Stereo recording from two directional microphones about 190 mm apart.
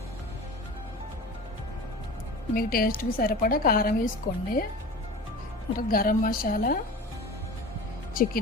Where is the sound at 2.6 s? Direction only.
50° left (ahead or behind).